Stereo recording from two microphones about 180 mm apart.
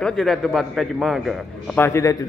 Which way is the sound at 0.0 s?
Centre (ahead or behind).